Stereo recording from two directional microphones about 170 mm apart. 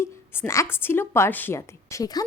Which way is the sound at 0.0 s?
15° left (ahead or behind).